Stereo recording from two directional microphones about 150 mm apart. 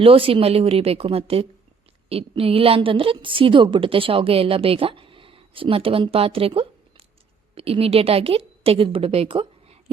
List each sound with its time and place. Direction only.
0.0 s a woman's voice: 40° right (ahead or behind)